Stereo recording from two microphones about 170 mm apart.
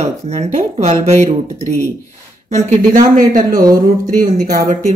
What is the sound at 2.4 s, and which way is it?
Speech, 45° right (ahead or behind).